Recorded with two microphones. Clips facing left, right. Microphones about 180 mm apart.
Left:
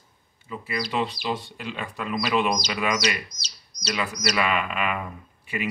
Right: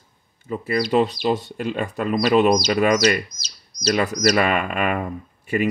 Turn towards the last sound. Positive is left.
turn(degrees=-45)  # may be behind; listen again after turning